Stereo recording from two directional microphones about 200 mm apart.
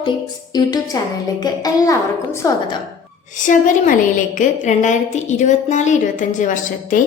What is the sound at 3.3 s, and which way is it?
A woman's voice, 40° left (ahead or behind).